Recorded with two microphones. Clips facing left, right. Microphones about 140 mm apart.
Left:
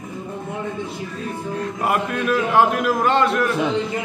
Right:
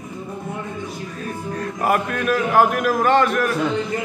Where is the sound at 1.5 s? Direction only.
20° left (ahead or behind).